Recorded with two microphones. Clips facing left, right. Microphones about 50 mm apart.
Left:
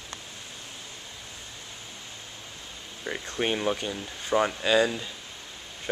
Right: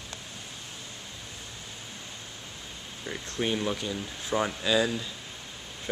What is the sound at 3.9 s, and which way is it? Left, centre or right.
Speech, centre.